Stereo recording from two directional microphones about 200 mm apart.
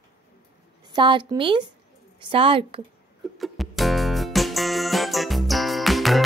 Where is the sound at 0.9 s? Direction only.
25° right (ahead or behind).